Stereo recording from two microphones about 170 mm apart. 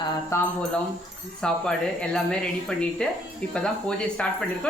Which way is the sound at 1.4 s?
5° left (ahead or behind).